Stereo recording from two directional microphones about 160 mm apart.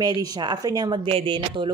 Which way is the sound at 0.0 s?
25° right (ahead or behind).